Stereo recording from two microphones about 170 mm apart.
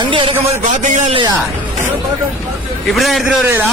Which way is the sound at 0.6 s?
45° right (ahead or behind).